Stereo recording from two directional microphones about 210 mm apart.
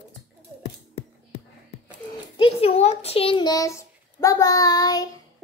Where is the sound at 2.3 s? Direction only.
25° left (ahead or behind).